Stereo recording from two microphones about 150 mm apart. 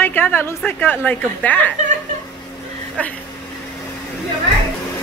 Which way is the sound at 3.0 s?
10° left (ahead or behind).